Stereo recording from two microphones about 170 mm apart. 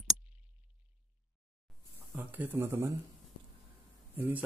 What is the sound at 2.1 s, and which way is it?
Speech, 10° right (ahead or behind).